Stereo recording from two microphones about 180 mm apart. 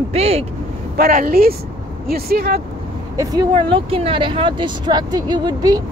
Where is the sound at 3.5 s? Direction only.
30° right (ahead or behind).